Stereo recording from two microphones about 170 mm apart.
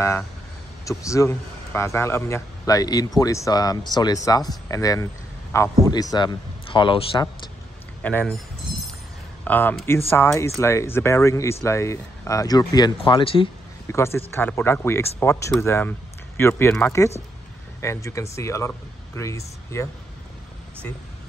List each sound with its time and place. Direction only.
0.8 s a man's voice: 20° left (ahead or behind)
8.0 s speech: 10° left (ahead or behind)
9.4 s a man's voice: 10° left (ahead or behind); by 13.5 s 30° left (ahead or behind)
13.9 s speech: 15° left (ahead or behind)